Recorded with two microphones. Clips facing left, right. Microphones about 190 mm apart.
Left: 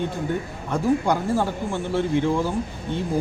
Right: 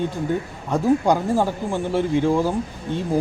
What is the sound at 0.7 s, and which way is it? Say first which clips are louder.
Speech: right 3 dB; 15° right (ahead or behind).